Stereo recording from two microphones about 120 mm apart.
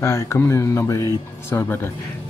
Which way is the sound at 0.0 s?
25° left (ahead or behind).